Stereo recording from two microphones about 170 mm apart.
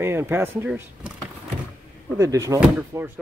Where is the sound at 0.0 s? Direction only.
15° right (ahead or behind).